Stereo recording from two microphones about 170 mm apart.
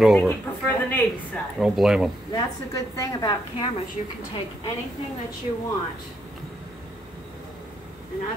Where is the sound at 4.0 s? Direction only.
40° left (ahead or behind).